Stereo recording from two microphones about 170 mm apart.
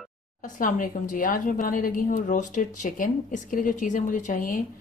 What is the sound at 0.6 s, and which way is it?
A woman's voice, 50° left (ahead or behind).